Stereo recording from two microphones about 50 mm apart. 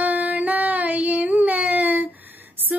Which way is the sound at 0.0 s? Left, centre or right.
Right.